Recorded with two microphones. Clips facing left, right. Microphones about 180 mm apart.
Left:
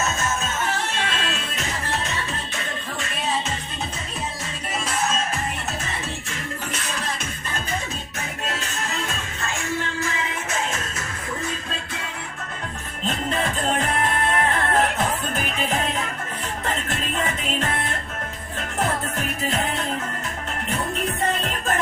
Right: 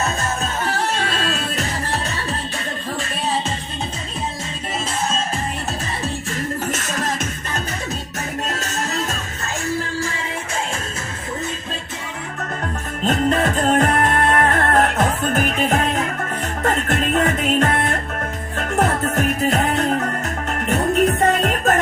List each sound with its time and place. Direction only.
0.4 s music: 35° right (ahead or behind)
6.7 s music: 45° right (ahead or behind)
8.4 s music: 40° right (ahead or behind)
13.1 s music: 45° right (ahead or behind)